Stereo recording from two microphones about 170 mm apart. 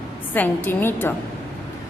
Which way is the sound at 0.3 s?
10° left (ahead or behind).